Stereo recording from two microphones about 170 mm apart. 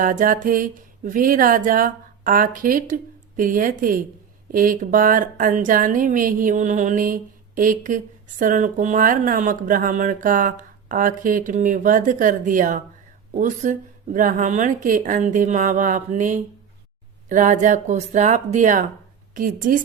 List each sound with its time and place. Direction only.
0.0 s speech: 50° right (ahead or behind)